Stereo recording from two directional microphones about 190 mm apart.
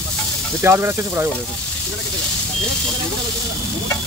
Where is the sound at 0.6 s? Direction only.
10° right (ahead or behind).